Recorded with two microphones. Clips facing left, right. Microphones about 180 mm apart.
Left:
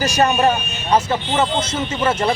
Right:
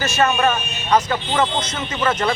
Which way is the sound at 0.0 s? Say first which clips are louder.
Left 2 dB; 35° left (ahead or behind).